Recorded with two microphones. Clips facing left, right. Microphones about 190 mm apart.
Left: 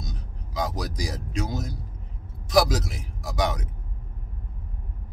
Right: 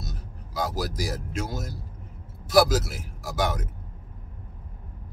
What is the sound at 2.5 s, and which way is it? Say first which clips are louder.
A man's voice: right 1 dB; 5° right (ahead or behind).